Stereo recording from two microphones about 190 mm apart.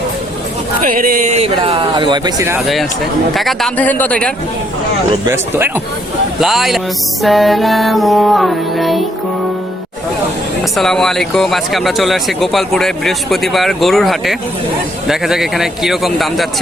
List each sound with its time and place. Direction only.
0.8 s speech: 45° right (ahead or behind); by 2.6 s 20° right (ahead or behind)
3.3 s speech: centre (ahead or behind)
5.2 s speech: 15° right (ahead or behind)
6.4 s speech: centre (ahead or behind)
10.8 s speech: centre (ahead or behind)